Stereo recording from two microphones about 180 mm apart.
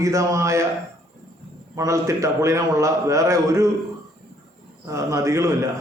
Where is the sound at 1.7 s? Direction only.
15° right (ahead or behind).